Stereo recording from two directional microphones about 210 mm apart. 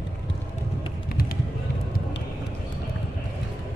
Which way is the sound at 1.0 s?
45° left (ahead or behind).